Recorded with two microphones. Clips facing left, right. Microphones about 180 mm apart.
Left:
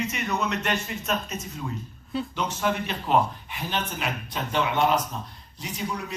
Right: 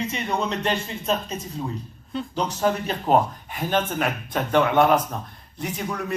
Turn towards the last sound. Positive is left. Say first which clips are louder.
# right 3 dB
turn(degrees=-55)  # may be behind; listen again after turning